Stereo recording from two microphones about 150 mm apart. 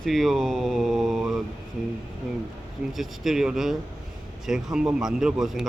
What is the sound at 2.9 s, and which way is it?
Speech, centre (ahead or behind).